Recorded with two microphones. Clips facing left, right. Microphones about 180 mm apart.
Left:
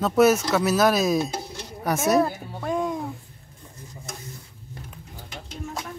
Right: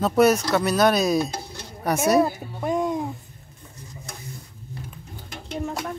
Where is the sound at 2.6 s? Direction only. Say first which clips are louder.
Right 2 dB; 20° right (ahead or behind).